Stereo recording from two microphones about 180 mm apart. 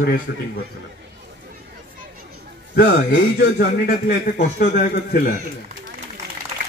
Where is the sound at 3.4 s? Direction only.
55° left (ahead or behind).